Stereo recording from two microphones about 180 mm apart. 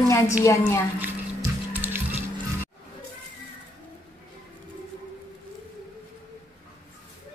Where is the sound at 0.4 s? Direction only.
15° left (ahead or behind).